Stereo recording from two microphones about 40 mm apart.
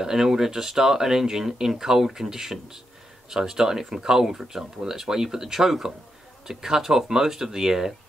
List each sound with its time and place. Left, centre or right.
0.0 s speech: centre